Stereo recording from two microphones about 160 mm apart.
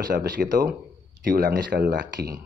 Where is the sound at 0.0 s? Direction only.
70° right (ahead or behind).